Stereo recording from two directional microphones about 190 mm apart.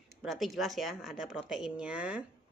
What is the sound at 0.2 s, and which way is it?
Speech, centre (ahead or behind).